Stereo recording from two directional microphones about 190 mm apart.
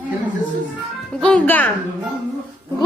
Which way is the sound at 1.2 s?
5° left (ahead or behind).